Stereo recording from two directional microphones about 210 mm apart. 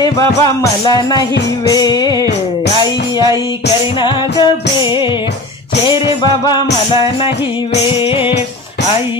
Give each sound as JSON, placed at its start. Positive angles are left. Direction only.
{"t": 0.4, "sound": "music", "side_deg": 20}
{"t": 5.9, "sound": "music", "side_deg": 20}